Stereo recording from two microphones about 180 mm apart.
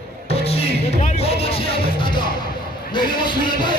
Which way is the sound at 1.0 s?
35° left (ahead or behind).